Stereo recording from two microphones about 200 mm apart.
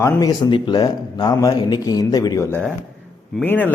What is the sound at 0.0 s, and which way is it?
A man's voice, 20° left (ahead or behind).